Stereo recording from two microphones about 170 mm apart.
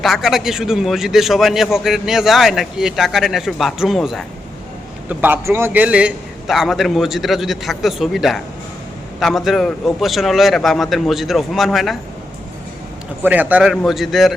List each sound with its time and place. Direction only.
0.0 s a man's voice: centre (ahead or behind)
5.0 s a man's voice: 10° right (ahead or behind)
13.2 s a man's voice: 10° right (ahead or behind)